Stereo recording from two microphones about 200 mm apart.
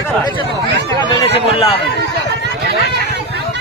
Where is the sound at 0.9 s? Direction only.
25° left (ahead or behind).